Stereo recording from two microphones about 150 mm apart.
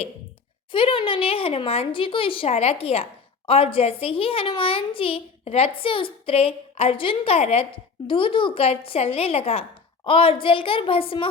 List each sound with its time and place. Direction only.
0.7 s a woman's voice: 35° left (ahead or behind)